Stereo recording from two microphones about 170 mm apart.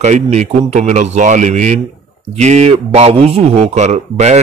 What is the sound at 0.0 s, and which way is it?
A man's voice, 45° right (ahead or behind).